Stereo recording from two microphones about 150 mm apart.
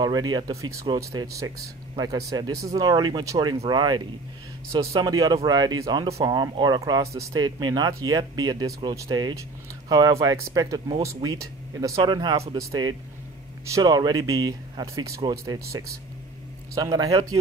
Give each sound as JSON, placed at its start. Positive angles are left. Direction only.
{"t": 0.0, "sound": "speech", "side_deg": -25}